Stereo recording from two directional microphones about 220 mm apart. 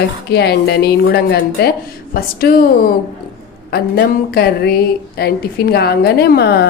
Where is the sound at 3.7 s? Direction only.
45° left (ahead or behind).